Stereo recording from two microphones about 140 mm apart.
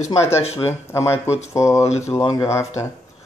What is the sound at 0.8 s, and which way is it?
Speech, 20° left (ahead or behind).